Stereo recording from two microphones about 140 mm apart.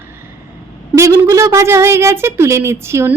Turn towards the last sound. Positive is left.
turn(degrees=-20)  # may be behind; listen again after turning